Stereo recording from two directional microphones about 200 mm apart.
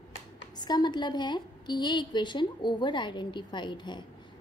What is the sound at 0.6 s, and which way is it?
A woman's voice, 20° left (ahead or behind).